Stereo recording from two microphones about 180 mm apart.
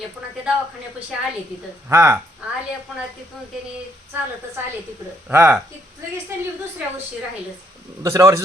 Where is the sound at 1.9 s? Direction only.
15° right (ahead or behind).